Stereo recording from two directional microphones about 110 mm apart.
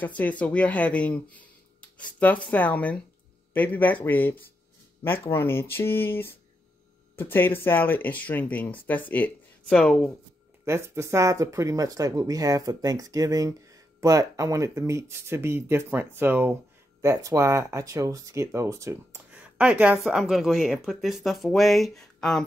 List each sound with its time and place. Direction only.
0.0 s speech: 15° left (ahead or behind)
10.6 s speech: 25° right (ahead or behind)
19.3 s a sound: 10° right (ahead or behind)
20.0 s speech: centre (ahead or behind)